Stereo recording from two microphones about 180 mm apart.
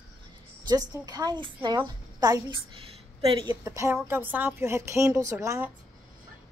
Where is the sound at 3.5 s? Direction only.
15° right (ahead or behind).